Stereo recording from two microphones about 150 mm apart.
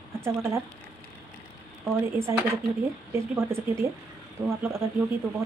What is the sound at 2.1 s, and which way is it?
Speech, 15° right (ahead or behind).